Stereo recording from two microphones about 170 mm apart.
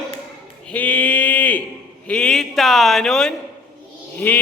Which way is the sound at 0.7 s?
10° left (ahead or behind).